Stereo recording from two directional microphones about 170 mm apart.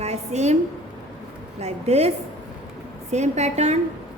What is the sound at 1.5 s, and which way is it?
A woman's voice, 40° right (ahead or behind).